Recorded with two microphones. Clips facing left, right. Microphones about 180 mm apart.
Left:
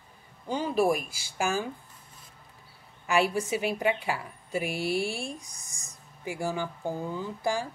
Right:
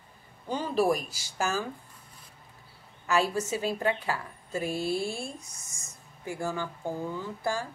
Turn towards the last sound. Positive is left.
turn(degrees=15)  # may be behind; listen again after turning